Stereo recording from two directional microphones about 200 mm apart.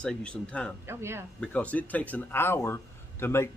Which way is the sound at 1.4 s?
5° left (ahead or behind).